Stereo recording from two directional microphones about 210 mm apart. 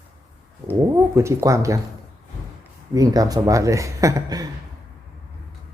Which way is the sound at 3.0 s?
15° right (ahead or behind).